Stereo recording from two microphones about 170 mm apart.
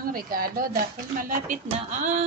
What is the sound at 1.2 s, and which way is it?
Speech, 45° right (ahead or behind).